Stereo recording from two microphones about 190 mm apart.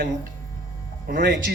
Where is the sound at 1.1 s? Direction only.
60° right (ahead or behind).